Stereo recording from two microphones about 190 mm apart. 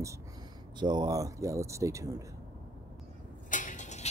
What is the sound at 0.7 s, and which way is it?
Speech, 20° right (ahead or behind).